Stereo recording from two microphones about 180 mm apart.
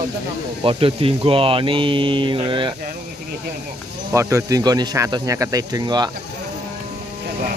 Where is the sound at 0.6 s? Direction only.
30° right (ahead or behind).